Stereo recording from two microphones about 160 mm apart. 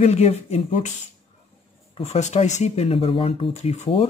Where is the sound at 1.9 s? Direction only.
45° left (ahead or behind).